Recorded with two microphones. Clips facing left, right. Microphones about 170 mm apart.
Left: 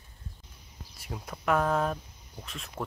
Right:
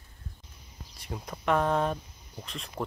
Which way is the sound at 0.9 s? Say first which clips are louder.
Right 1 dB; 5° left (ahead or behind).